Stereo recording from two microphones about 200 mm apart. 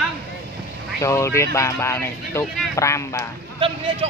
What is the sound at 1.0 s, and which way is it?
Speech, 15° left (ahead or behind).